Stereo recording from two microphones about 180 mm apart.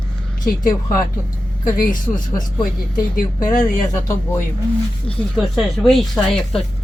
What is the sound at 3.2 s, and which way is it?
Speech, 45° left (ahead or behind).